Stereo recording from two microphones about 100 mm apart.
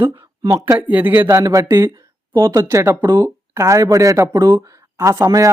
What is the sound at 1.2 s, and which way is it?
Speech, 35° right (ahead or behind).